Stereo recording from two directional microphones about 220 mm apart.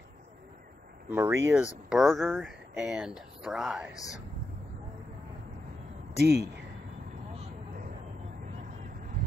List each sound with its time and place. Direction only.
1.1 s speech: 10° right (ahead or behind)
6.1 s speech: 45° right (ahead or behind)